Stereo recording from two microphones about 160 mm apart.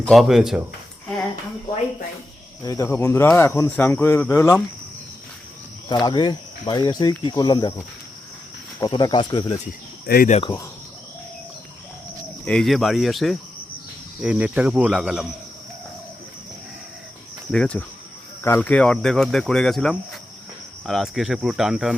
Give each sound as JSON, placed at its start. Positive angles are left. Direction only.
{"t": 0.0, "sound": "speech", "side_deg": 0}
{"t": 1.0, "sound": "a sound", "side_deg": 5}
{"t": 2.6, "sound": "speech", "side_deg": 20}
{"t": 5.9, "sound": "speech", "side_deg": 25}
{"t": 8.8, "sound": "speech", "side_deg": 25}
{"t": 10.1, "sound": "speech", "side_deg": 90}
{"t": 12.5, "sound": "speech", "side_deg": 0}
{"t": 17.5, "sound": "speech", "side_deg": 5}